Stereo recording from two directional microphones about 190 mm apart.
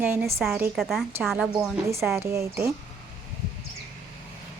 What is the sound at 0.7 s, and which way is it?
Speech, centre (ahead or behind).